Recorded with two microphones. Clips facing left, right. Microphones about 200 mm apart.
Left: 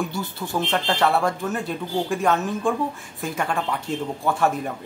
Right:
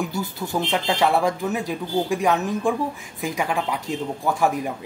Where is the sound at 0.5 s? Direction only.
15° right (ahead or behind).